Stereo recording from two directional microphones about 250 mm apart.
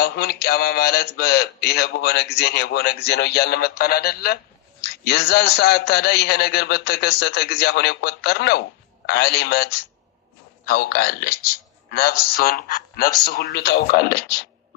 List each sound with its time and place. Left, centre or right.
0.0 s a man's voice: left
10.7 s a man's voice: left